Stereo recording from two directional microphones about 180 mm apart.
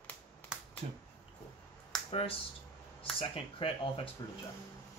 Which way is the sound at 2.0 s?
30° left (ahead or behind).